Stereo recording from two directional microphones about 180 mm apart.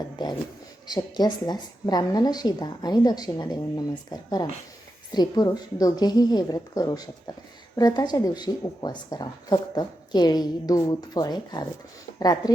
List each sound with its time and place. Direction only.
0.9 s speech: 20° left (ahead or behind)